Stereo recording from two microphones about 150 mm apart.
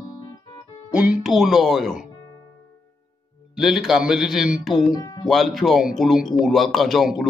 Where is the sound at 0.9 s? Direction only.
5° right (ahead or behind).